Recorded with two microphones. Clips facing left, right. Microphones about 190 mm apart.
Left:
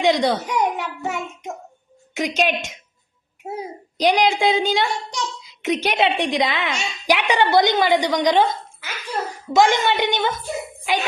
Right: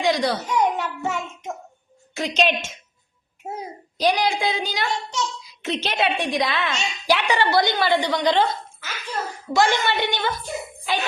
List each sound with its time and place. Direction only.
0.0 s a sound: 20° left (ahead or behind)
2.1 s a child's voice: 10° left (ahead or behind)
3.9 s a woman's voice: 20° left (ahead or behind)